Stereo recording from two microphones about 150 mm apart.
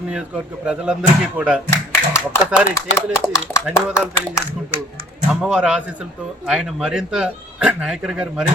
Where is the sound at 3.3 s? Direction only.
20° left (ahead or behind).